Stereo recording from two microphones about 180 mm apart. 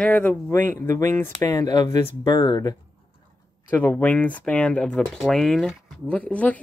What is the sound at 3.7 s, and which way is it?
Speech, 10° left (ahead or behind).